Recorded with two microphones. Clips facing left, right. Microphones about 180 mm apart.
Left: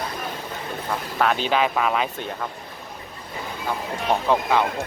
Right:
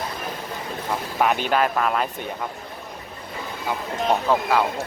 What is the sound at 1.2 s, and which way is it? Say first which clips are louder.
Speech: right 1 dB; 10° right (ahead or behind).